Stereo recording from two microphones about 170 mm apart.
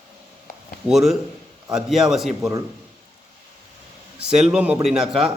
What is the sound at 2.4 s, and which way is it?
Speech, 15° right (ahead or behind).